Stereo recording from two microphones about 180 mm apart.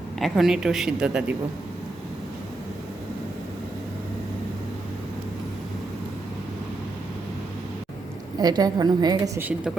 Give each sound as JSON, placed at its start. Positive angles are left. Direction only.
{"t": 0.2, "sound": "speech", "side_deg": 0}
{"t": 8.4, "sound": "a woman's voice", "side_deg": -20}